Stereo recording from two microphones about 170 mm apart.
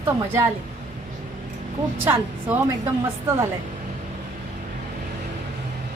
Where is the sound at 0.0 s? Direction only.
15° right (ahead or behind).